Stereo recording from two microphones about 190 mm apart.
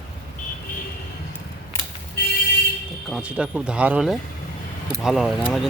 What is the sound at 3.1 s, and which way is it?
Speech, 5° right (ahead or behind).